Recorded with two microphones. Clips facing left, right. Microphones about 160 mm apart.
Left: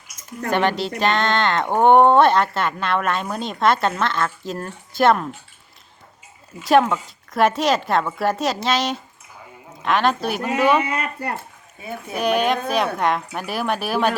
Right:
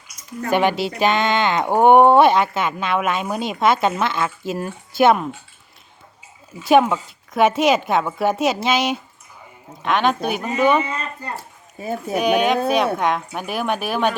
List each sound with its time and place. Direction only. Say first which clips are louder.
0.5 s a woman's voice: right 2 dB; 5° right (ahead or behind)
6.6 s speech: right 1 dB; 5° right (ahead or behind)
11.3 s speech: right 3 dB; 40° right (ahead or behind)
12.1 s speech: right 2 dB; centre (ahead or behind)